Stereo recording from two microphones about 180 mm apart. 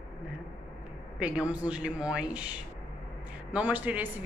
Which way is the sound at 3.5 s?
10° right (ahead or behind).